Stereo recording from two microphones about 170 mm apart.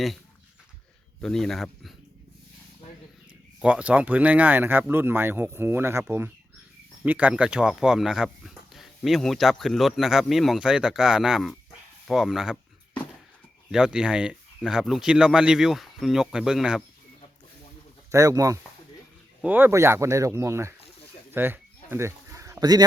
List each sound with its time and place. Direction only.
1.2 s speech: centre (ahead or behind)
3.6 s speech: 5° right (ahead or behind)
13.7 s speech: 5° right (ahead or behind)
18.1 s speech: 20° right (ahead or behind)
21.3 s a sound: 10° right (ahead or behind)